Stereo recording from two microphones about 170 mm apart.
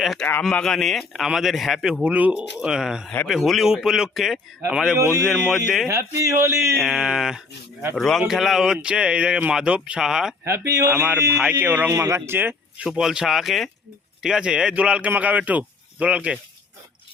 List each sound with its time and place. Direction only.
0.0 s a man's voice: centre (ahead or behind)
5.9 s speech: 15° right (ahead or behind)
6.7 s a man's voice: centre (ahead or behind)
10.4 s speech: 15° right (ahead or behind)
11.3 s speech: 5° right (ahead or behind)